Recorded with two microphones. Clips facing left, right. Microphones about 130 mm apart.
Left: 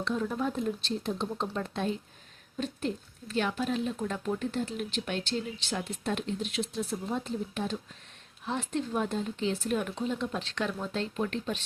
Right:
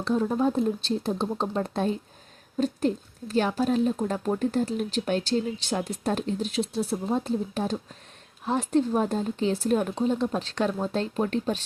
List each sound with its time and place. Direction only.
0.0 s speech: 35° right (ahead or behind)